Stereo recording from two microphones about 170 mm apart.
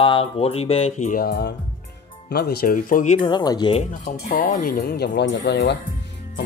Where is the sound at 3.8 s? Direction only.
50° left (ahead or behind); by 5.7 s 90° left.